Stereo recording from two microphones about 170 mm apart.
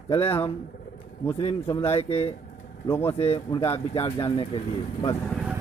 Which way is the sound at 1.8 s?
35° left (ahead or behind).